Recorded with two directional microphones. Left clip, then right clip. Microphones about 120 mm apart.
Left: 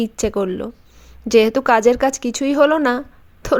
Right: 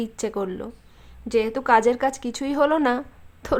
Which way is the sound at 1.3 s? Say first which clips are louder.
Left 6 dB; 50° left (ahead or behind).